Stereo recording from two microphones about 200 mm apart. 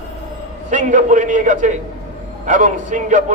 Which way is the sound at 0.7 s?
40° right (ahead or behind).